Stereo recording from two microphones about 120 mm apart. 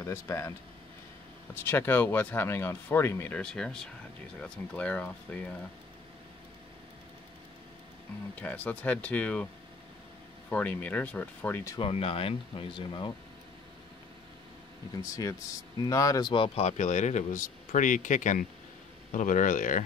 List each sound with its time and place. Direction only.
0.0 s speech: 25° left (ahead or behind)
1.5 s speech: 20° left (ahead or behind)
8.4 s speech: 10° left (ahead or behind)
10.5 s speech: 15° left (ahead or behind)
11.8 s speech: 50° left (ahead or behind)
15.0 s speech: 30° left (ahead or behind); by 16.6 s 45° left (ahead or behind)
16.6 s speech: 80° left